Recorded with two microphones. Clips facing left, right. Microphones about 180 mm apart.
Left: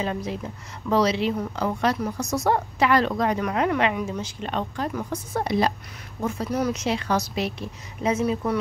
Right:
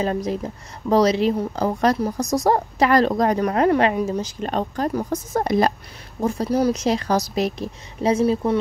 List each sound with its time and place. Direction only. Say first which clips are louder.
0.0 s a woman's voice: right 5 dB; 40° right (ahead or behind)
6.2 s a woman's voice: right 5 dB; 35° right (ahead or behind)